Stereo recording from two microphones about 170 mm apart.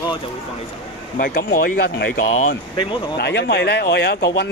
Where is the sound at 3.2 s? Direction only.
85° left.